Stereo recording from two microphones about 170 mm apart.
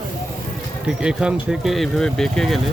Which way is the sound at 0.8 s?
5° right (ahead or behind).